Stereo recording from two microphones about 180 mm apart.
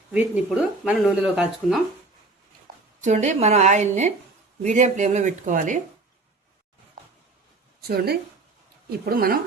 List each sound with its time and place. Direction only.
0.1 s speech: 5° right (ahead or behind)
3.0 s a woman's voice: 40° right (ahead or behind)
7.9 s a woman's voice: 60° right (ahead or behind)